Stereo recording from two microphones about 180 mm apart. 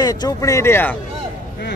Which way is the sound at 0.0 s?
20° left (ahead or behind).